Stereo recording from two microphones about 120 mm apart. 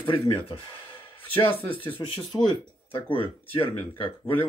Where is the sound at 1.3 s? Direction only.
15° left (ahead or behind).